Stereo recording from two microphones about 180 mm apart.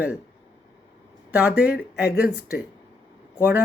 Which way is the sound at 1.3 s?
10° right (ahead or behind).